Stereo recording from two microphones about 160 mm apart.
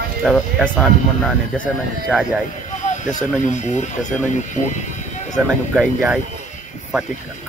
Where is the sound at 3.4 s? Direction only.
50° left (ahead or behind).